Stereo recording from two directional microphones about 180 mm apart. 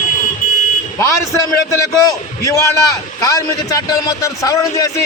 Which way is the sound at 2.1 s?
20° left (ahead or behind).